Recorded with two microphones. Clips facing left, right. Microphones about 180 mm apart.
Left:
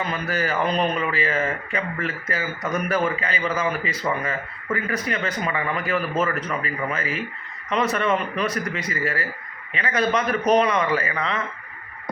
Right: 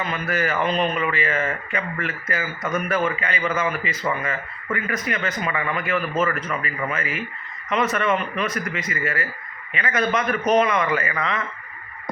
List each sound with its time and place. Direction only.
0.0 s speech: 35° left (ahead or behind)